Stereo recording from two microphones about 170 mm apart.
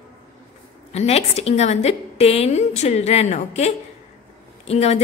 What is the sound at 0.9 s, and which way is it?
A woman's voice, 40° left (ahead or behind).